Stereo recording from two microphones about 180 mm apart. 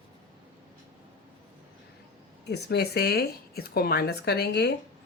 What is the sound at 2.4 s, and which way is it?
Speech, 65° left (ahead or behind).